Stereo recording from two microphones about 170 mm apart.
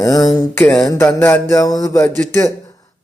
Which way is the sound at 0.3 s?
20° left (ahead or behind).